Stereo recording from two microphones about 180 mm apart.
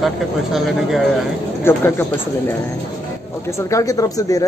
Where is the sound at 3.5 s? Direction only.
15° left (ahead or behind).